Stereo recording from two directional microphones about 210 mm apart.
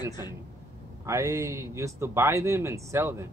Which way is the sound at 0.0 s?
20° left (ahead or behind).